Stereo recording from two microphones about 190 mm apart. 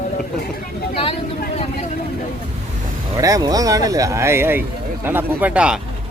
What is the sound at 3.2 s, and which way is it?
Speech, 20° right (ahead or behind).